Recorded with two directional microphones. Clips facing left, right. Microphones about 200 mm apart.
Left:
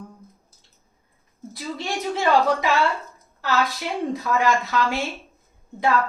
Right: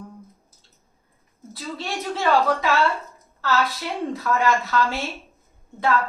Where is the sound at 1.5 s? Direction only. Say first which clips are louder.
Left 1 dB; 15° left (ahead or behind).